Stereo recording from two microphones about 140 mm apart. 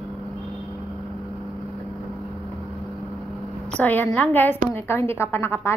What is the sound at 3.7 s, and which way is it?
A woman's voice, 10° left (ahead or behind).